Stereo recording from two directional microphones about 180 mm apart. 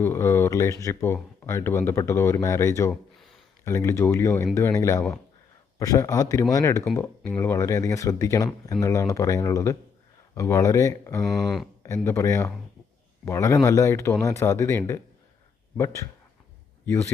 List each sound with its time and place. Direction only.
0.0 s speech: 15° left (ahead or behind)